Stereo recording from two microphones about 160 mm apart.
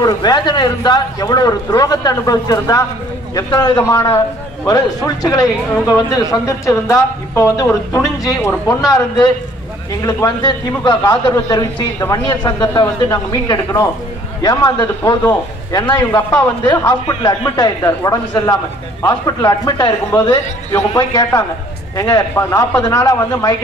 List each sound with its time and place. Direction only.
0.0 s speech: 25° left (ahead or behind)
10.8 s speech: 25° left (ahead or behind)
16.2 s a man's voice: 10° left (ahead or behind)
16.6 s speech: 20° left (ahead or behind)